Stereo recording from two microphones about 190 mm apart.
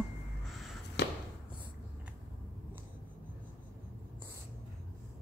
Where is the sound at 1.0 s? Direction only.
65° left (ahead or behind).